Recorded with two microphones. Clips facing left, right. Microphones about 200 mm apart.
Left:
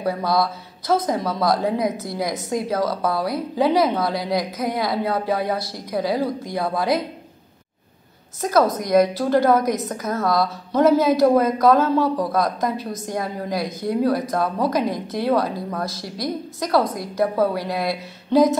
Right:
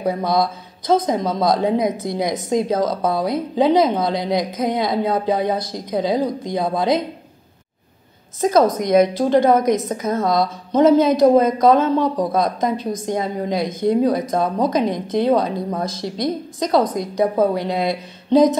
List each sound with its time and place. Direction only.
0.0 s a woman's voice: 20° right (ahead or behind)
8.7 s a woman's voice: 20° right (ahead or behind)